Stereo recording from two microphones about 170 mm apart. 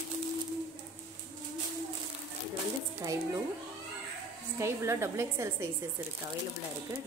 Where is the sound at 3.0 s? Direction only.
20° right (ahead or behind).